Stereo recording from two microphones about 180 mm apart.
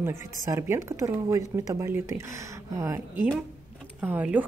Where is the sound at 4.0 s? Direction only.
10° right (ahead or behind).